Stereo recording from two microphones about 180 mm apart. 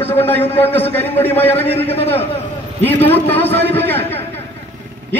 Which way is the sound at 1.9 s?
35° left (ahead or behind).